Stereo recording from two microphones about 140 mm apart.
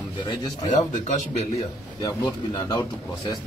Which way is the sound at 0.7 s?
55° left (ahead or behind).